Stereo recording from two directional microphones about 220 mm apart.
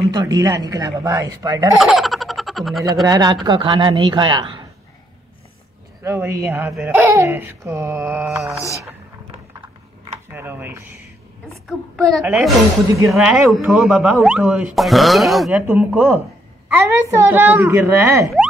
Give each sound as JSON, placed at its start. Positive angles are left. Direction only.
{"t": 0.1, "sound": "speech", "side_deg": -15}
{"t": 1.8, "sound": "speech", "side_deg": 0}
{"t": 3.1, "sound": "speech", "side_deg": -20}
{"t": 6.0, "sound": "speech", "side_deg": -10}
{"t": 10.3, "sound": "speech", "side_deg": -10}
{"t": 12.1, "sound": "speech", "side_deg": -5}